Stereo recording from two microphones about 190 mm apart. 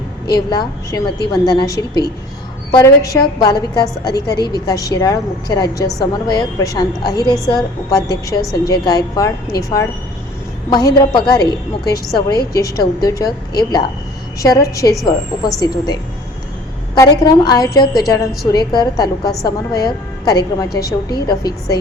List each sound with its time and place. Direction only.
0.3 s a woman's voice: 20° left (ahead or behind)
16.9 s a woman's voice: 20° left (ahead or behind)